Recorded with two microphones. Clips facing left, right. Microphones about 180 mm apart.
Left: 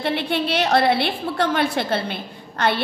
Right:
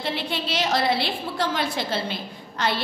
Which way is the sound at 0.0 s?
60° left (ahead or behind).